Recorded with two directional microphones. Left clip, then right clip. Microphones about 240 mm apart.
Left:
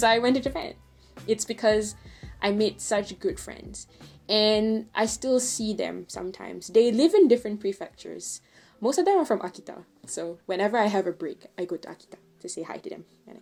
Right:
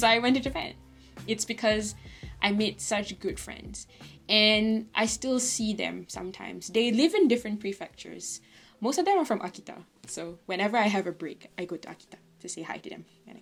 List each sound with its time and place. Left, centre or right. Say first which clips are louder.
0.0 s speech: left 2 dB; right